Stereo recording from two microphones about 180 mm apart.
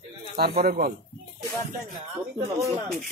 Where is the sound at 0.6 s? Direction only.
50° right (ahead or behind).